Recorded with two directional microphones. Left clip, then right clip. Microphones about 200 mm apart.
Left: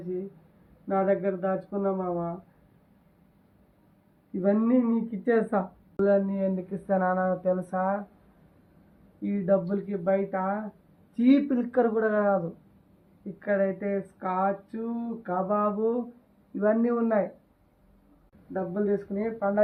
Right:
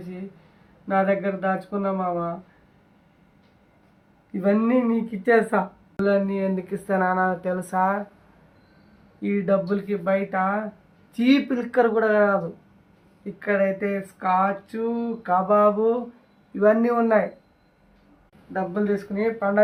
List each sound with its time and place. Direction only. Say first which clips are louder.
0.9 s speech: right 4 dB; 20° right (ahead or behind)
4.4 s speech: right 3 dB; 20° right (ahead or behind)
9.2 s speech: right 3 dB; 20° right (ahead or behind)
13.4 s speech: right 4 dB; 25° right (ahead or behind)
18.5 s speech: right 3 dB; 25° right (ahead or behind)